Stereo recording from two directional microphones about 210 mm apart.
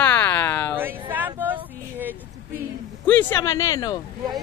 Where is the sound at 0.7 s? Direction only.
10° right (ahead or behind).